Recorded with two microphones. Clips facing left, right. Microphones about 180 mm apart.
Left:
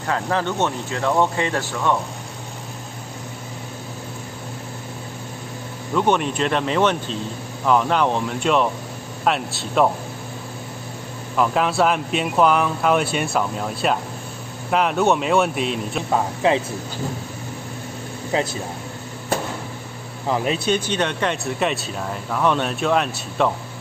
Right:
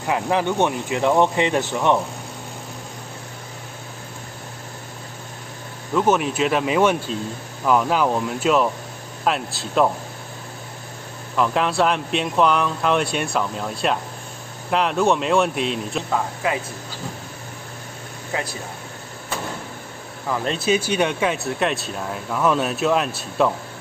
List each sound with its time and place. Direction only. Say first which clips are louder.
0.0 s speech: right 2 dB; 15° right (ahead or behind)
5.9 s speech: right 1 dB; 5° right (ahead or behind)
11.3 s speech: left 1 dB; centre (ahead or behind)
16.1 s speech: left 6 dB; 25° left (ahead or behind)
18.3 s speech: left 5 dB; 25° left (ahead or behind)
20.4 s speech: right 4 dB; centre (ahead or behind)